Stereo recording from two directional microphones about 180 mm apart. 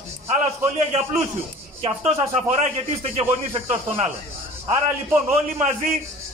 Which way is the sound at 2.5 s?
35° right (ahead or behind).